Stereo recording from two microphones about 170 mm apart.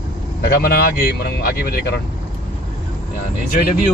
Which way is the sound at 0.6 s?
65° left (ahead or behind).